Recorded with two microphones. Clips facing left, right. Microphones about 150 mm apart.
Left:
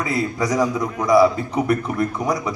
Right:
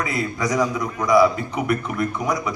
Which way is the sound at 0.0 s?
30° left (ahead or behind).